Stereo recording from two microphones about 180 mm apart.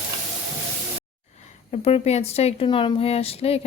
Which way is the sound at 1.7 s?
35° left (ahead or behind).